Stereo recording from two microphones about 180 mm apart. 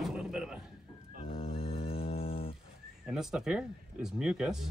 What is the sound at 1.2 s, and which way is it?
Music, 35° left (ahead or behind).